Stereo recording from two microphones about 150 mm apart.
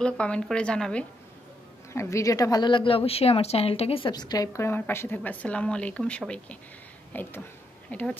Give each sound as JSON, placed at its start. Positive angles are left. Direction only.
{"t": 0.0, "sound": "a woman's voice", "side_deg": 5}
{"t": 2.0, "sound": "a woman's voice", "side_deg": 20}
{"t": 4.1, "sound": "a woman's voice", "side_deg": 25}